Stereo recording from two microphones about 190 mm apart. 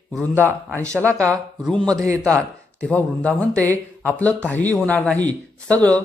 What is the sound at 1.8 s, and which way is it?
Speech, 20° right (ahead or behind).